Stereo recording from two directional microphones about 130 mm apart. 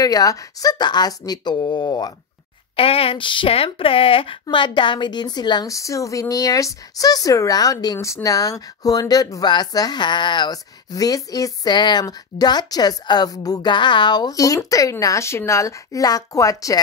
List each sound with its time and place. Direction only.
0.0 s speech: 30° left (ahead or behind)
2.7 s speech: 45° left (ahead or behind); by 16.8 s 25° left (ahead or behind)